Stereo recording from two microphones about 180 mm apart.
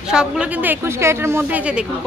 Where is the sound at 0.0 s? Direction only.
5° right (ahead or behind).